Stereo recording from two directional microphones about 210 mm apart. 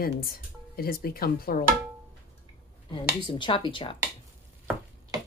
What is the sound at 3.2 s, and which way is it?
Speech, 20° left (ahead or behind).